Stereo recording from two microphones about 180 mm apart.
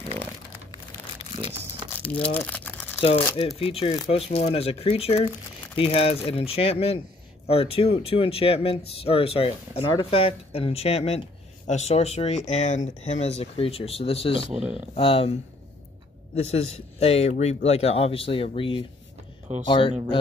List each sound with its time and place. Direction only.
2.2 s speech: 5° left (ahead or behind)
3.0 s speech: 35° left (ahead or behind)
16.3 s speech: 35° left (ahead or behind)